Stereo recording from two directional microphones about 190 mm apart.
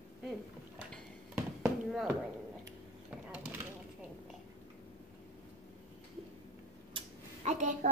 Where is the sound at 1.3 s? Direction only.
5° right (ahead or behind).